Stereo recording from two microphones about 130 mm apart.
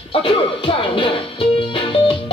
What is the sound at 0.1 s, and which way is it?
Music, 45° left (ahead or behind).